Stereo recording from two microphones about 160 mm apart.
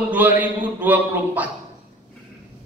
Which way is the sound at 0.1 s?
10° right (ahead or behind).